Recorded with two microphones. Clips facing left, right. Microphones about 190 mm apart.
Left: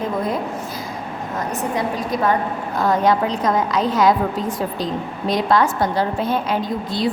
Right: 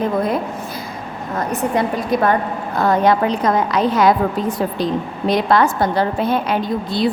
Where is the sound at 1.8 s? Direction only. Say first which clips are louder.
Right 4 dB; 60° right (ahead or behind).